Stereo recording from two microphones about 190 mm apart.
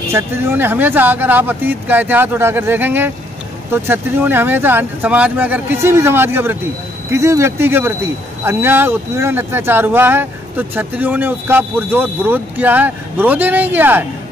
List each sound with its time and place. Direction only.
0.1 s speech: 10° right (ahead or behind)